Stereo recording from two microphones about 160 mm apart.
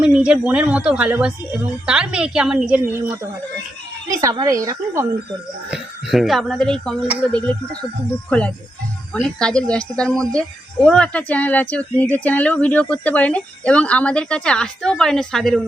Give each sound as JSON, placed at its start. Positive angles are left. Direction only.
{"t": 0.0, "sound": "a woman's voice", "side_deg": -5}
{"t": 5.7, "sound": "speech", "side_deg": 0}
{"t": 7.3, "sound": "a woman's voice", "side_deg": 5}